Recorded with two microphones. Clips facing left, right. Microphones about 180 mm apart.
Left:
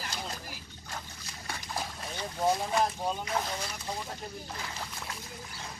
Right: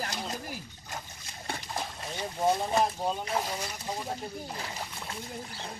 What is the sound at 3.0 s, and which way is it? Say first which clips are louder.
Speech: right 1 dB; 5° right (ahead or behind).